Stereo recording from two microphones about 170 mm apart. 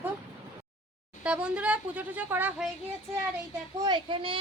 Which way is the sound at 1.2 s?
5° right (ahead or behind).